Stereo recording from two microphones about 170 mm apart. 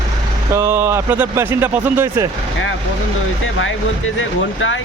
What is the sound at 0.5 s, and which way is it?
Speech, 15° right (ahead or behind).